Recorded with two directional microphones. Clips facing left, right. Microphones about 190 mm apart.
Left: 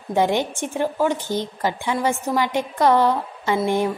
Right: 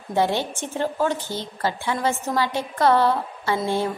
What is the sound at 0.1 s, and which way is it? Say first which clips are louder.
A woman's voice: left 2 dB; 15° left (ahead or behind).